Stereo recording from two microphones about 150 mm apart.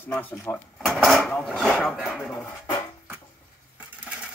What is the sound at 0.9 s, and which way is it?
Speech, centre (ahead or behind).